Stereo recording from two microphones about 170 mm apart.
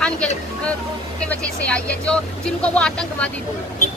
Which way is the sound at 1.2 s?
5° left (ahead or behind).